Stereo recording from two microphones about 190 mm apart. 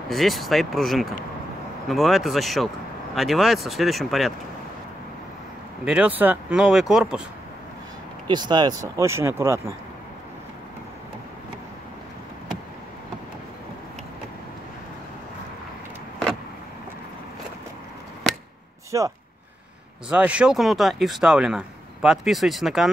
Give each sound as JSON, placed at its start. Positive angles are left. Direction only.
{"t": 0.1, "sound": "speech", "side_deg": 0}
{"t": 5.9, "sound": "speech", "side_deg": -5}
{"t": 8.3, "sound": "speech", "side_deg": -25}
{"t": 18.9, "sound": "speech", "side_deg": -15}